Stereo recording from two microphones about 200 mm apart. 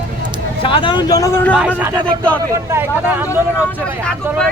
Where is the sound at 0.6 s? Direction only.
25° left (ahead or behind).